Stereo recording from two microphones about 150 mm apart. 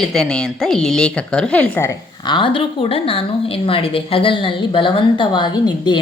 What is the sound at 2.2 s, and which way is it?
A woman's voice, 30° left (ahead or behind).